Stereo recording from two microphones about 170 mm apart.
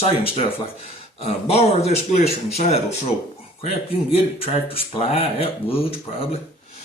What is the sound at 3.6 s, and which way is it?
Speech, 35° left (ahead or behind).